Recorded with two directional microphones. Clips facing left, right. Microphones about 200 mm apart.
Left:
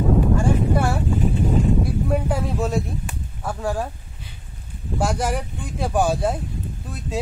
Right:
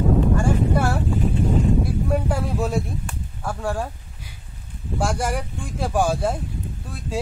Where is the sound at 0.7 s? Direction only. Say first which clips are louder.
Even; centre (ahead or behind).